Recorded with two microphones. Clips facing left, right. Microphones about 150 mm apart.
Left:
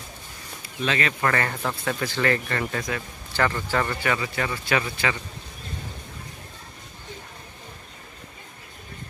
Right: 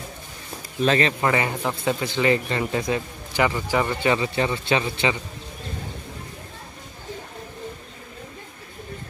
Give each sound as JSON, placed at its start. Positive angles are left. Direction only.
{"t": 0.8, "sound": "speech", "side_deg": -35}
{"t": 1.2, "sound": "speech", "side_deg": -15}